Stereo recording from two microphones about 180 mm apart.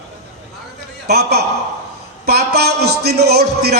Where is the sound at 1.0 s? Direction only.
65° right (ahead or behind).